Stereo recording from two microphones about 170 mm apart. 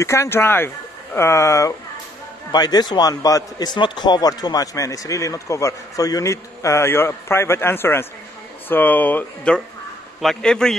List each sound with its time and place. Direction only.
0.0 s a man's voice: 15° left (ahead or behind)